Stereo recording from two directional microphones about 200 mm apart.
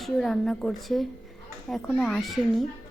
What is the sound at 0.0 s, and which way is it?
A woman's voice, centre (ahead or behind).